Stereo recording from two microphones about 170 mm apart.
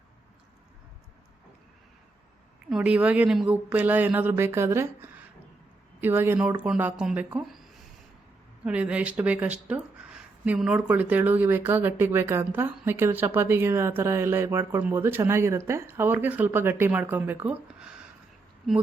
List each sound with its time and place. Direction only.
2.6 s speech: 5° right (ahead or behind)
6.0 s speech: 10° right (ahead or behind)
8.6 s speech: 5° right (ahead or behind)